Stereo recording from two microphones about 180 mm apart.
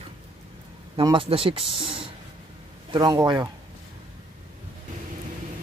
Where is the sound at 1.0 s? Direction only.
25° right (ahead or behind).